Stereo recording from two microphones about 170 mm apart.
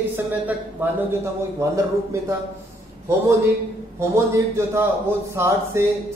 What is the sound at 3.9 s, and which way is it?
Speech, 15° right (ahead or behind).